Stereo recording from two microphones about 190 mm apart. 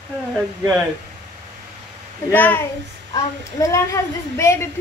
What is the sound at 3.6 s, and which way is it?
A woman's voice, 15° left (ahead or behind).